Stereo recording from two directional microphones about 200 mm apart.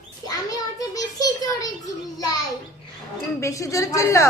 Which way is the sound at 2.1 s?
20° left (ahead or behind).